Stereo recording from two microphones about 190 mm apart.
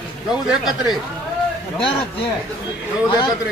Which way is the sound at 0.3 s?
5° right (ahead or behind).